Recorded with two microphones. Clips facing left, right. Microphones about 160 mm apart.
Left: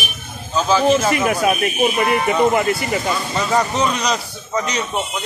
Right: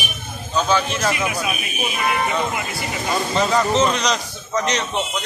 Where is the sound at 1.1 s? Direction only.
50° left (ahead or behind).